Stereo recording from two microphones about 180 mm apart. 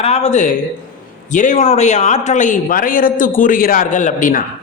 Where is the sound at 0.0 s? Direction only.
35° left (ahead or behind).